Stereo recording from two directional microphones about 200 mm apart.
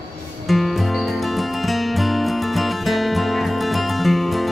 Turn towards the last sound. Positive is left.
turn(degrees=0)  # may be behind; listen again after turning